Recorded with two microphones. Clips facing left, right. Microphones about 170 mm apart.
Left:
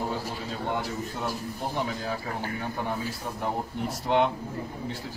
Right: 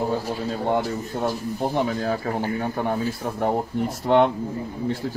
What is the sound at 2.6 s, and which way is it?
Speech, 50° right (ahead or behind).